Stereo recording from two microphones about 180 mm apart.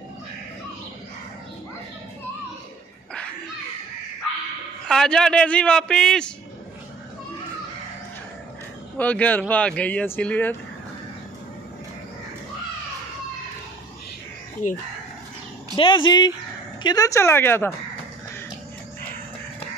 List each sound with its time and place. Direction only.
4.8 s speech: 5° left (ahead or behind)
8.9 s speech: 10° left (ahead or behind)
15.7 s speech: 25° left (ahead or behind)